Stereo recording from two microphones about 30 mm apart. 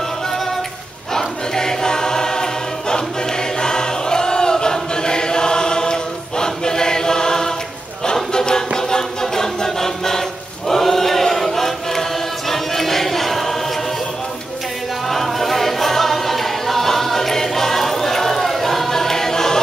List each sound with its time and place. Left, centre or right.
1.1 s choir: centre
8.0 s music: left
10.7 s choir: centre
15.0 s a capella: centre